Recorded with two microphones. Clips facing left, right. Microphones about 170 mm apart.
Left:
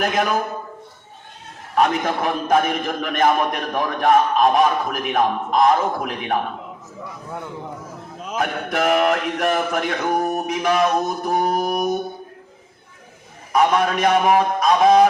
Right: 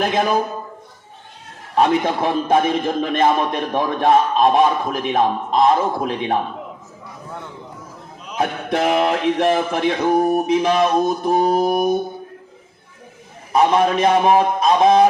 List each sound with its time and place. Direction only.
0.0 s a man's voice: 30° right (ahead or behind)
1.7 s a man's voice: 30° right (ahead or behind)
8.4 s a man's voice: 30° right (ahead or behind)
13.5 s a man's voice: 25° right (ahead or behind)